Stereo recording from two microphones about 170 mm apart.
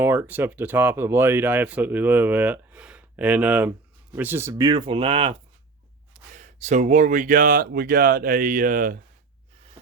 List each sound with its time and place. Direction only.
0.0 s speech: 10° right (ahead or behind); by 5.4 s 35° right (ahead or behind)
6.3 s speech: 45° right (ahead or behind)